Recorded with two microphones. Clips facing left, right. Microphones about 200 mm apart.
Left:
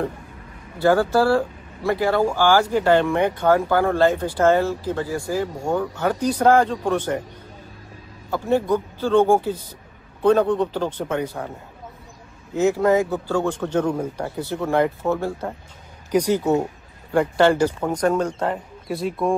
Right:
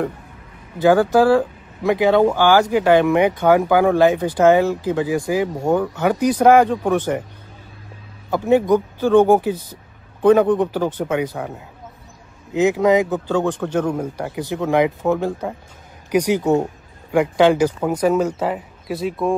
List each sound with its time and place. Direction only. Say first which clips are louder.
0.8 s speech: right 4 dB; 15° right (ahead or behind)
8.3 s speech: right 5 dB; 15° right (ahead or behind)
12.5 s speech: right 2 dB; 15° right (ahead or behind); by 19.3 s centre (ahead or behind)